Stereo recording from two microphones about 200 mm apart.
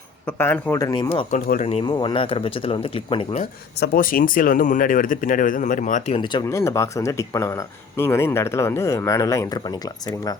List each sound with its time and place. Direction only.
0.3 s speech: 10° left (ahead or behind)
1.1 s speech: 30° left (ahead or behind)
3.8 s speech: 45° left (ahead or behind)
6.1 s speech: 25° left (ahead or behind)